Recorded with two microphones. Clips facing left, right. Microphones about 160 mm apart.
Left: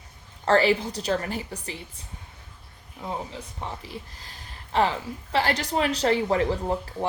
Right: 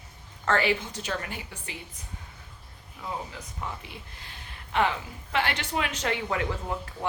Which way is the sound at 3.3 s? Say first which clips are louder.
Left 2 dB; 30° left (ahead or behind).